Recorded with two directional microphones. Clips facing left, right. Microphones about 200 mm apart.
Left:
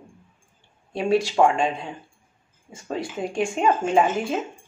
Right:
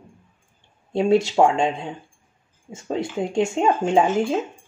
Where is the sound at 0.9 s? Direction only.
25° right (ahead or behind).